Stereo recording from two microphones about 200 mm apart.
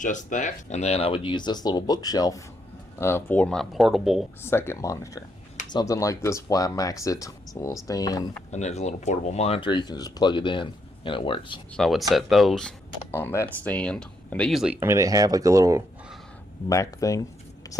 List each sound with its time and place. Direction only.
0.0 s speech: 40° left (ahead or behind); by 4.3 s centre (ahead or behind)
4.4 s speech: 10° left (ahead or behind)
8.4 s speech: 35° left (ahead or behind)
11.7 s speech: centre (ahead or behind); by 15.8 s 15° right (ahead or behind)
16.6 s speech: 15° left (ahead or behind)